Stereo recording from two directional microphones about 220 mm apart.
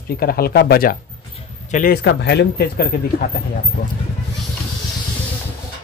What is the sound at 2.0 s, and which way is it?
Speech, 45° left (ahead or behind).